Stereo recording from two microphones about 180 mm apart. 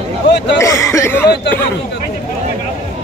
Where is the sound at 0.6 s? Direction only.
15° left (ahead or behind).